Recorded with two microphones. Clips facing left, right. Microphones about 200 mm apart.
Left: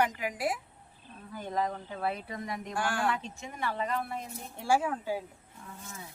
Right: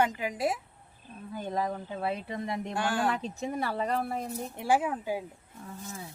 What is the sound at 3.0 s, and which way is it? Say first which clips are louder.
Speech: right 3 dB; 35° right (ahead or behind).